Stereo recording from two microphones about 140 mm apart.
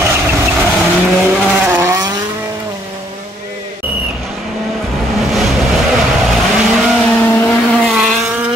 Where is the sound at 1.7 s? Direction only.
20° right (ahead or behind).